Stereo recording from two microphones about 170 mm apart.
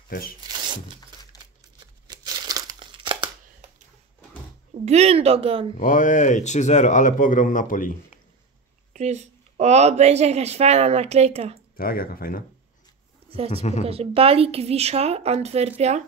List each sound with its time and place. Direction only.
0.5 s a sound: 25° right (ahead or behind)
2.0 s crumpling: 25° right (ahead or behind)
4.8 s a woman's voice: 40° right (ahead or behind)
5.8 s speech: 50° left (ahead or behind)
8.9 s a woman's voice: 40° right (ahead or behind)
11.7 s speech: 60° left (ahead or behind)
13.2 s a sound: 35° right (ahead or behind)
13.6 s speech: 40° left (ahead or behind)
13.8 s a woman's voice: 35° right (ahead or behind)